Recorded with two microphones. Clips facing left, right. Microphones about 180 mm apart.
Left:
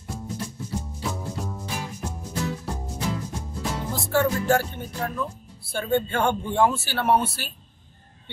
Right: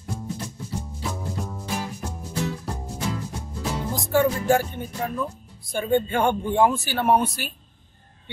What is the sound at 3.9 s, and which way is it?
A man's voice, 15° right (ahead or behind).